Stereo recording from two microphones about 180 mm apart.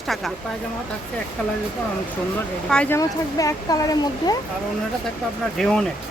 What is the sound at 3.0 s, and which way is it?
Speech, 20° left (ahead or behind).